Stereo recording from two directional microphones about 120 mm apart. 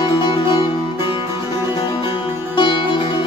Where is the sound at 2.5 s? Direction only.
40° left (ahead or behind).